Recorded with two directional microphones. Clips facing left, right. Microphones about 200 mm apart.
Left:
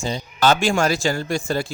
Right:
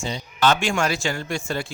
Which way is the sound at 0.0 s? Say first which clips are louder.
Left 2 dB; 40° left (ahead or behind).